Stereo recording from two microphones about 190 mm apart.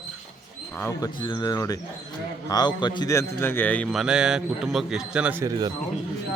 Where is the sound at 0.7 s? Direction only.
15° left (ahead or behind).